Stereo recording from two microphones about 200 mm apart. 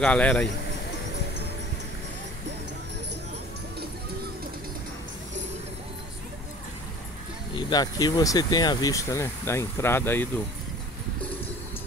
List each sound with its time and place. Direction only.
0.0 s speech: 5° left (ahead or behind)
7.5 s speech: 20° left (ahead or behind)